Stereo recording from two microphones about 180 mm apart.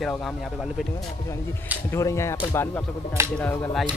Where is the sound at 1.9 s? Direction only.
15° left (ahead or behind).